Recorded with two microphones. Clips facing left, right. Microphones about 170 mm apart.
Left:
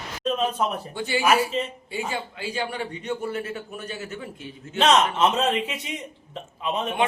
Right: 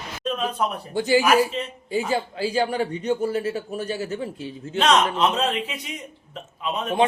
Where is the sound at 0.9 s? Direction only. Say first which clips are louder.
Right 5 dB; 40° right (ahead or behind).